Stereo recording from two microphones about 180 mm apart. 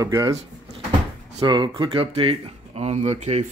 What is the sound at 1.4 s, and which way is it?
Speech, 25° right (ahead or behind).